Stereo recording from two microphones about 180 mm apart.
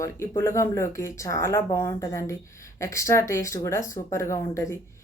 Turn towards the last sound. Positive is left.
turn(degrees=15)  # may be behind; listen again after turning